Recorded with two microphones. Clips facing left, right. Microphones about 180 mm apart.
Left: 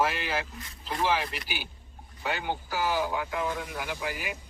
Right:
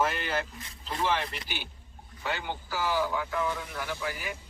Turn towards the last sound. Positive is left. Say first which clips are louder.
# left 1 dB
turn(degrees=15)  # may be behind; listen again after turning